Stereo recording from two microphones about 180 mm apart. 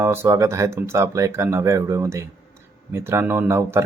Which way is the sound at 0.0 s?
15° right (ahead or behind).